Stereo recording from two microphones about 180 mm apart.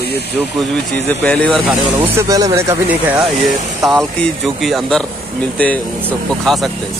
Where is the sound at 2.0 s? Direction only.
15° right (ahead or behind).